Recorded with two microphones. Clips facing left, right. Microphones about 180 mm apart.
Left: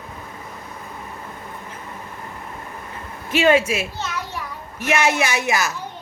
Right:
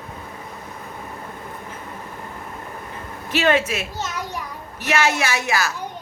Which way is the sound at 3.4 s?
10° left (ahead or behind).